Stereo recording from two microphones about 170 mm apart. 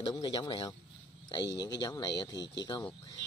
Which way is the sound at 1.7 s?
25° left (ahead or behind).